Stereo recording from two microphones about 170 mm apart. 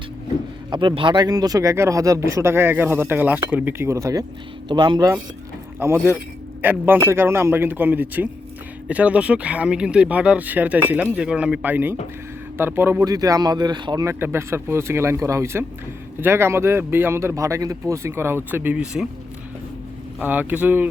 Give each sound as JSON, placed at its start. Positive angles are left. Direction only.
{"t": 0.7, "sound": "speech", "side_deg": -30}
{"t": 20.1, "sound": "speech", "side_deg": -10}